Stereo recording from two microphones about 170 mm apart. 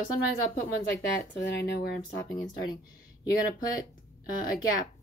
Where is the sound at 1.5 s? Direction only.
75° left (ahead or behind).